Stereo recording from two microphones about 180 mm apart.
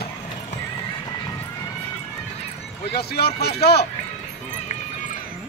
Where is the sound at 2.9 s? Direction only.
60° left (ahead or behind).